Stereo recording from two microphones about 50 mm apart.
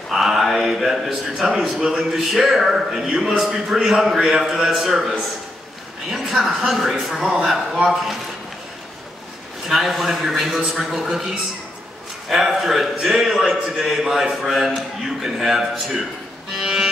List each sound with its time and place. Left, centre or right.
0.1 s a man's voice: centre
9.7 s a man's voice: centre
16.5 s music: centre